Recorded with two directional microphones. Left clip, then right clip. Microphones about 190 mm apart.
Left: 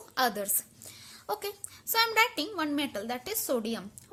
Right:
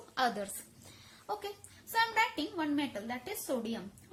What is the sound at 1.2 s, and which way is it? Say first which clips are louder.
A woman's voice: left 4 dB; 50° left (ahead or behind).